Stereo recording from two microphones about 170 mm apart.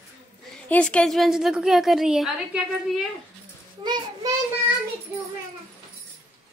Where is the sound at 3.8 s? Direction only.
25° right (ahead or behind).